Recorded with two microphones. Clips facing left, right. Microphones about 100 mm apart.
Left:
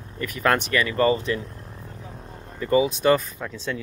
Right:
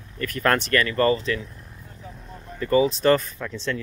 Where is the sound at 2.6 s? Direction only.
15° left (ahead or behind).